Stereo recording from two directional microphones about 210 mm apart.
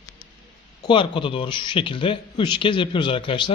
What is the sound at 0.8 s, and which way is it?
Speech, 25° left (ahead or behind).